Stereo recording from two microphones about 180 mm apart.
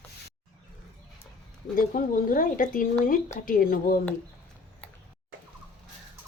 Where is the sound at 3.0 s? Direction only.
50° left (ahead or behind).